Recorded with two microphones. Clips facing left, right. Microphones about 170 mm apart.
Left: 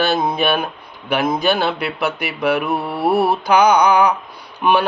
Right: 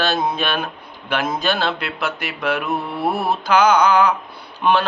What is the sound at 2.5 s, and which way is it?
Mantra, 60° left (ahead or behind).